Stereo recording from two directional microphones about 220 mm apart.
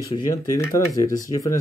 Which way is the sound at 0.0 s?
15° left (ahead or behind).